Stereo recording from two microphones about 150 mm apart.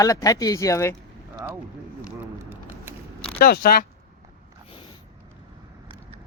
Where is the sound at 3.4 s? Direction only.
85° left.